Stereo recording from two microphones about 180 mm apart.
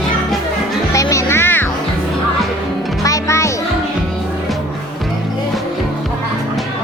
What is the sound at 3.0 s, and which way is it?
Music, 15° left (ahead or behind).